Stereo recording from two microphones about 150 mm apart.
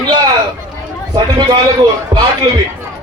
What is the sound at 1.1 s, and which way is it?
Speech, 30° right (ahead or behind).